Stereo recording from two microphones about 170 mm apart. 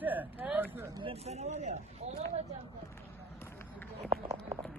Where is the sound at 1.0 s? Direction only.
35° right (ahead or behind).